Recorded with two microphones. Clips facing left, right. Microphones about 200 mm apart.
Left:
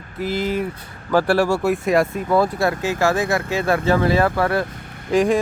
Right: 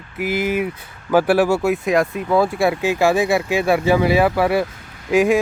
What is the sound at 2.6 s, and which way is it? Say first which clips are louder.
Speech: right 3 dB; 10° right (ahead or behind).